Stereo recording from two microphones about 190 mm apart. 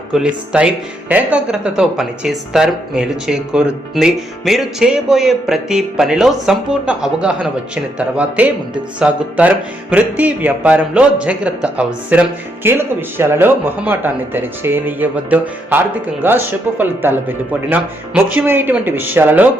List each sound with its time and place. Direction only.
0.1 s speech: 5° right (ahead or behind)